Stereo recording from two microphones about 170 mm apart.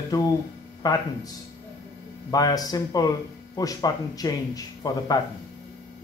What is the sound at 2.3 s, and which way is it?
Speech, 20° left (ahead or behind).